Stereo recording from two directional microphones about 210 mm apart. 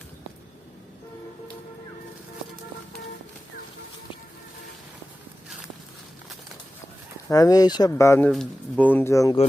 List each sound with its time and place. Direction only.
7.3 s speech: 15° left (ahead or behind)
8.3 s speech: centre (ahead or behind)